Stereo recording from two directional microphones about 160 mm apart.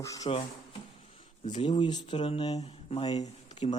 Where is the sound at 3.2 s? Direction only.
45° left (ahead or behind).